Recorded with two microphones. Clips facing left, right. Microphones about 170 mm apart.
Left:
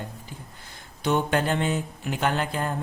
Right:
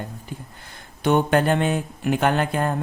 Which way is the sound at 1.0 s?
55° right (ahead or behind).